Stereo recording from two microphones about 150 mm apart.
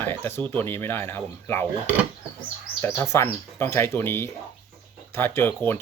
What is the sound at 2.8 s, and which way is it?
Speech, 20° left (ahead or behind).